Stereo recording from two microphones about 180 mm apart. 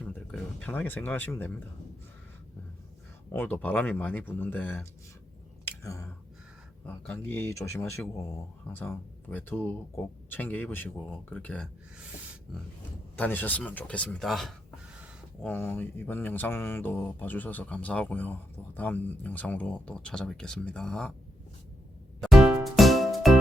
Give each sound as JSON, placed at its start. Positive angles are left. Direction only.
{"t": 0.0, "sound": "speech", "side_deg": 10}
{"t": 3.3, "sound": "speech", "side_deg": 10}
{"t": 5.6, "sound": "a sound", "side_deg": 15}
{"t": 6.8, "sound": "speech", "side_deg": 10}
{"t": 13.1, "sound": "speech", "side_deg": 10}
{"t": 22.2, "sound": "music", "side_deg": 0}